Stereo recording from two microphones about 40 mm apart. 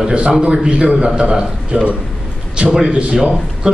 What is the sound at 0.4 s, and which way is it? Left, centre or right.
A man's voice, right.